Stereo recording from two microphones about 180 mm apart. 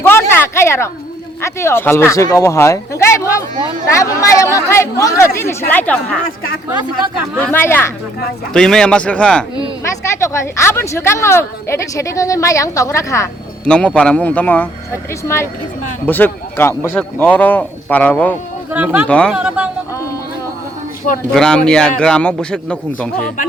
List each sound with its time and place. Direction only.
0.0 s a sound: 15° left (ahead or behind)
1.4 s speech: 15° left (ahead or behind)
7.4 s a man's voice: 10° left (ahead or behind)
13.7 s speech: 5° left (ahead or behind)
16.0 s speech: 10° left (ahead or behind)
18.7 s speech: 10° right (ahead or behind)
19.0 s a man's voice: 5° left (ahead or behind)
19.3 s speech: 5° right (ahead or behind)
21.3 s a man's voice: 5° left (ahead or behind)